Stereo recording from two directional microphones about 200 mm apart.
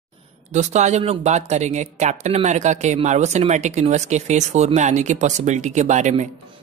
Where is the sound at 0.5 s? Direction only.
35° right (ahead or behind).